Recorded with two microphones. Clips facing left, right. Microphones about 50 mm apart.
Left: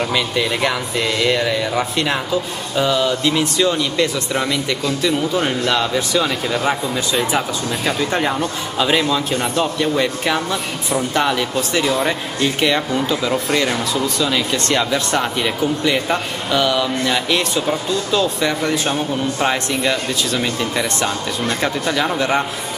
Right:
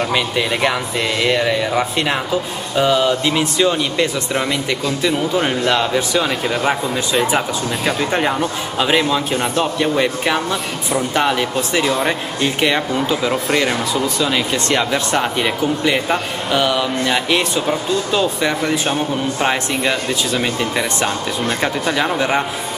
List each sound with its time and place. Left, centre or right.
0.1 s speech: centre
9.3 s speech: centre
9.8 s speech: centre
11.8 s speech: centre
12.1 s speech: centre
18.6 s speech: centre
19.4 s speech: centre